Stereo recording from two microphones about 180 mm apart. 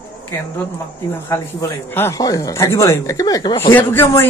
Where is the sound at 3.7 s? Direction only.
10° left (ahead or behind).